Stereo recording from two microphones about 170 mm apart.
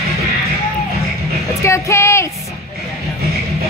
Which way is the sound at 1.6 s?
15° left (ahead or behind).